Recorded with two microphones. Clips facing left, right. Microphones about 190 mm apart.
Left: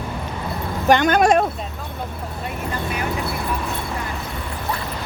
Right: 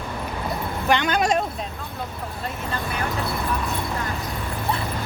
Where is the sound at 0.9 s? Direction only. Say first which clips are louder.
Left 6 dB; 45° left (ahead or behind).